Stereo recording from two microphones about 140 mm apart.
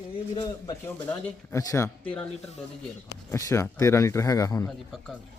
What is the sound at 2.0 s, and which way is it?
Speech, 10° left (ahead or behind).